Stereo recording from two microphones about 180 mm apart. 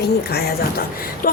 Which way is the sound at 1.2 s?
50° left (ahead or behind).